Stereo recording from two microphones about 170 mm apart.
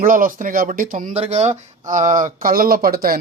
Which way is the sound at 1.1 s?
40° right (ahead or behind).